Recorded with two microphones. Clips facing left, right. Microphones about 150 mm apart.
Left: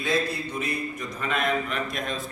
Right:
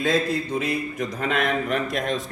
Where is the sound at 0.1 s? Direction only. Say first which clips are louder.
Right 2 dB; 90° right.